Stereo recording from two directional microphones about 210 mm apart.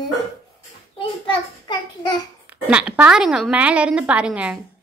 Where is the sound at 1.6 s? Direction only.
20° left (ahead or behind).